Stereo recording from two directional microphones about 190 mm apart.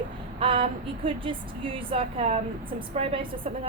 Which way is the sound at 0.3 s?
30° right (ahead or behind).